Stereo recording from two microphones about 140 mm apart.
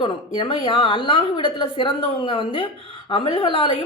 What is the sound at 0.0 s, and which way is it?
A woman's voice, 35° left (ahead or behind).